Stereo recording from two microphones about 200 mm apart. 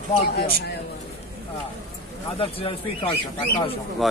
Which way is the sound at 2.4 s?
25° left (ahead or behind).